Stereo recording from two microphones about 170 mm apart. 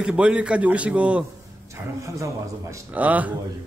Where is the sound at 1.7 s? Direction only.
20° right (ahead or behind).